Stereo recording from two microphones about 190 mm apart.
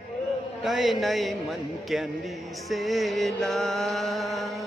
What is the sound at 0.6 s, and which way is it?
A man's voice, centre (ahead or behind).